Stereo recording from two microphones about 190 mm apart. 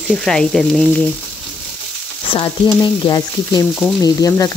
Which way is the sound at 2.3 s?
25° left (ahead or behind).